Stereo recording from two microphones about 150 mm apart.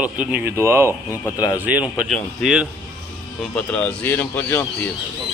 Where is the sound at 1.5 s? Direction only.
10° right (ahead or behind); by 4.7 s 15° left (ahead or behind).